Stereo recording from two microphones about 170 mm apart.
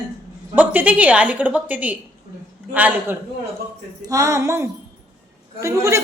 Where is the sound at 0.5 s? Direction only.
10° right (ahead or behind).